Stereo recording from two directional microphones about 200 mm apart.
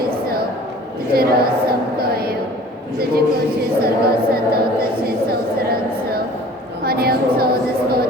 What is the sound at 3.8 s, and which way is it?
A woman's voice, 50° right (ahead or behind).